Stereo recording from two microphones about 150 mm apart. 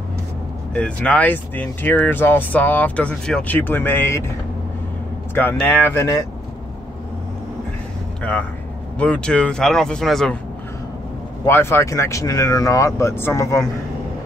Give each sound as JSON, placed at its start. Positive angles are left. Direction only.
{"t": 0.7, "sound": "speech", "side_deg": 10}
{"t": 5.3, "sound": "speech", "side_deg": 15}
{"t": 8.2, "sound": "speech", "side_deg": 10}
{"t": 11.4, "sound": "speech", "side_deg": 15}